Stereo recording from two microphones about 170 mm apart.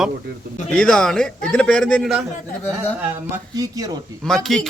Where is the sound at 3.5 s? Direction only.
20° right (ahead or behind).